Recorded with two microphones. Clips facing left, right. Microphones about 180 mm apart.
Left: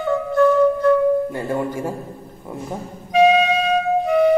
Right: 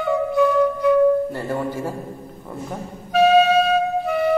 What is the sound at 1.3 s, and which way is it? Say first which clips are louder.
Speech: left 2 dB; 15° left (ahead or behind).